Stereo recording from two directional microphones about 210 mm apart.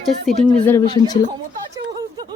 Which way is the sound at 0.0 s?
5° left (ahead or behind).